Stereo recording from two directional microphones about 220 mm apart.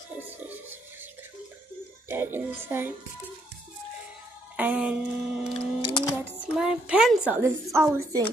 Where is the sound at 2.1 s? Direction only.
10° right (ahead or behind).